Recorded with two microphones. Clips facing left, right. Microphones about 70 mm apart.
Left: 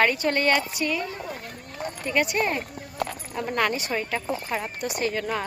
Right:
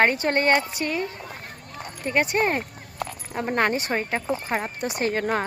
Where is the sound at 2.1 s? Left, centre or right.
Right.